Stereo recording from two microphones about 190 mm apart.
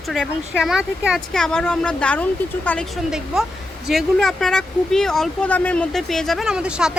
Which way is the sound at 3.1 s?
5° right (ahead or behind).